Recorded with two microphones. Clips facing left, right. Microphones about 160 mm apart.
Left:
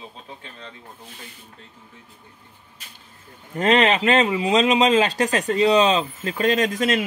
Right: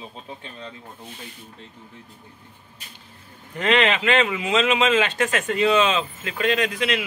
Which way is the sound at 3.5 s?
40° left (ahead or behind).